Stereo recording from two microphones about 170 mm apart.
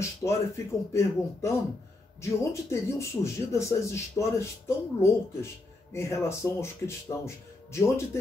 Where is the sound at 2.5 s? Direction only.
15° left (ahead or behind).